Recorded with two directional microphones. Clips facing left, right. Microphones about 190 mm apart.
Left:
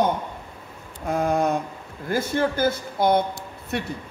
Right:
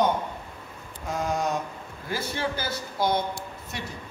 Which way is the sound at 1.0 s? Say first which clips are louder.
Left 6 dB; 55° left (ahead or behind).